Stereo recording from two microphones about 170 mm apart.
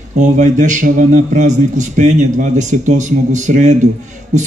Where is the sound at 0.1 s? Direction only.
45° right (ahead or behind).